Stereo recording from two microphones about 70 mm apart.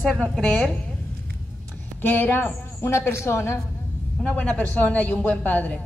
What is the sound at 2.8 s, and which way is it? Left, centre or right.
Speech, left.